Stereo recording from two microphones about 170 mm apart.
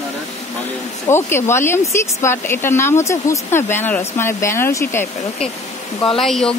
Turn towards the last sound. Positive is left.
turn(degrees=0)  # may be behind; listen again after turning